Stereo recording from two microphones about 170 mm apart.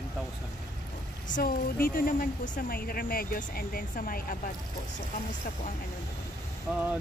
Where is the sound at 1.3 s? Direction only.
60° left (ahead or behind).